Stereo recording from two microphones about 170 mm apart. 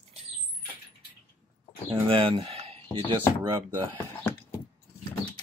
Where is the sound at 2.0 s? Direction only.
35° right (ahead or behind).